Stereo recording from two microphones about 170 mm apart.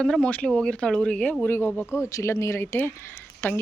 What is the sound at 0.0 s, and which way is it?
Speech, 5° left (ahead or behind).